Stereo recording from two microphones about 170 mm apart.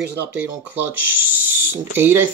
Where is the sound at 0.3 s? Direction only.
10° right (ahead or behind).